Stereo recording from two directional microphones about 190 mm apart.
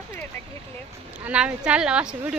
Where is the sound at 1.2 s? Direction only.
5° right (ahead or behind).